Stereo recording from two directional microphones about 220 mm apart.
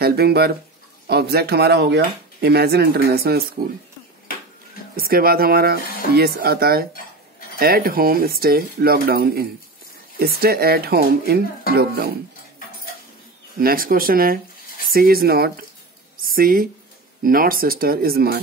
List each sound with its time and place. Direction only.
0.0 s speech: 45° right (ahead or behind)
4.9 s speech: 45° right (ahead or behind)
13.6 s a woman's voice: 40° right (ahead or behind)